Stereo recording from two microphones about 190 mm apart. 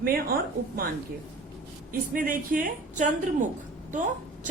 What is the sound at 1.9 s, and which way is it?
Speech, 45° right (ahead or behind).